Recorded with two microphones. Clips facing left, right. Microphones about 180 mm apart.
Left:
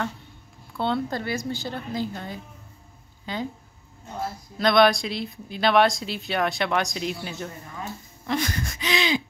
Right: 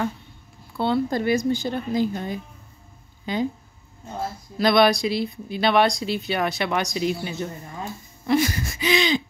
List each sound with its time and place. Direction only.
0.7 s speech: 5° right (ahead or behind)
1.1 s speech: 15° right (ahead or behind)
4.6 s speech: 5° right (ahead or behind)